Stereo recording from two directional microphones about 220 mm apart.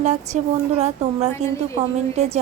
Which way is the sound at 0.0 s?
30° right (ahead or behind).